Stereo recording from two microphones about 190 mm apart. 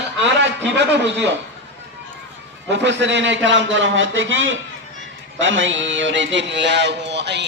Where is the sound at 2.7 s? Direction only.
70° right (ahead or behind).